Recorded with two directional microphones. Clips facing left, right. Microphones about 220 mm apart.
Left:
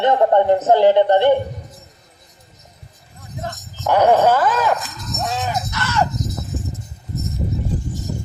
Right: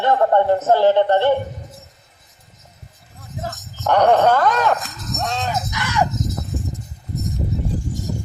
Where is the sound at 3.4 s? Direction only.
Centre (ahead or behind).